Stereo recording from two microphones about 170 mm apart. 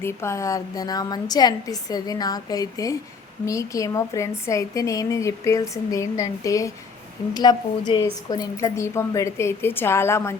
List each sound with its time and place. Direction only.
0.0 s a woman's voice: 15° left (ahead or behind)